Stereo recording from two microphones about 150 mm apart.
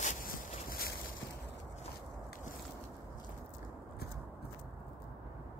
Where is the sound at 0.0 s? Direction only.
70° left (ahead or behind).